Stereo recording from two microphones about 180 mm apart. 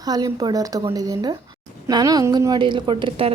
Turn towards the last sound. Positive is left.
turn(degrees=-30)  # may be behind; listen again after turning